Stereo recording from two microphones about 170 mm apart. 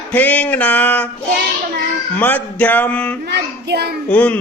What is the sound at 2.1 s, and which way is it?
Speech, 10° left (ahead or behind).